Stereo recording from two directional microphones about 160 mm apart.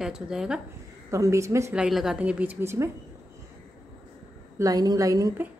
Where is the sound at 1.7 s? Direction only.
5° right (ahead or behind).